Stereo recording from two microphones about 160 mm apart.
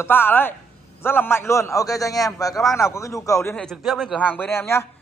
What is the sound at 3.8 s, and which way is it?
Speech, centre (ahead or behind).